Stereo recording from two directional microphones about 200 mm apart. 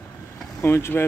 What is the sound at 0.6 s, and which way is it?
Speech, 10° left (ahead or behind).